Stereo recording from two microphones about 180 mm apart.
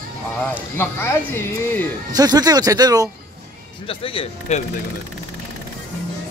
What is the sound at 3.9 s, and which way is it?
Speech, 30° left (ahead or behind).